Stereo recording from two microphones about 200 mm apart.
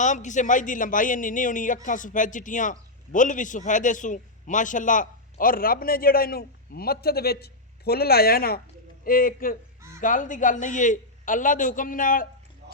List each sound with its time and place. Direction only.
0.0 s a man's voice: 35° left (ahead or behind)
12.6 s tick-tock: 55° right (ahead or behind)